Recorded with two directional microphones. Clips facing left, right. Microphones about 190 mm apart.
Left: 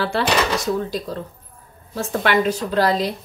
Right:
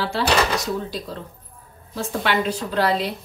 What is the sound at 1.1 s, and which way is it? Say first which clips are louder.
A woman's voice: left 4 dB; 40° left (ahead or behind).